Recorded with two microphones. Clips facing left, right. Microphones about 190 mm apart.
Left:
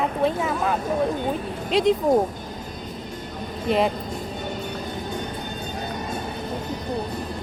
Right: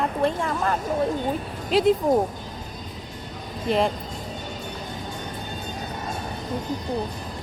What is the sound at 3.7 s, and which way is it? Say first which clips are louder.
Speech: left 1 dB; centre (ahead or behind).